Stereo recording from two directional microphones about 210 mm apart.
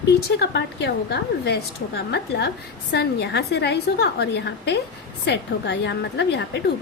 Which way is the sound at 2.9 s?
50° left (ahead or behind).